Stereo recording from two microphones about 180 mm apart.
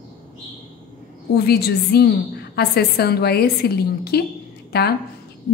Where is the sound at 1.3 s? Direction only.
60° left (ahead or behind).